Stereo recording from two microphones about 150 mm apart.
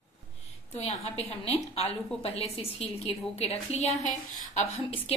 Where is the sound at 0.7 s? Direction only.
45° left (ahead or behind).